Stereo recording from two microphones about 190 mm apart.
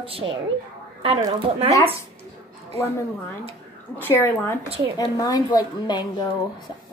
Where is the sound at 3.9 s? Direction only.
10° left (ahead or behind).